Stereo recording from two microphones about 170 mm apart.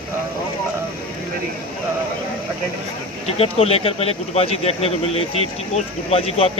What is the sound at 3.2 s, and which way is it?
Speech, 35° left (ahead or behind).